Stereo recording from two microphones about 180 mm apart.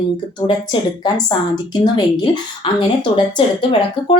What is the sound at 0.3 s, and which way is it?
A woman's voice, 25° left (ahead or behind).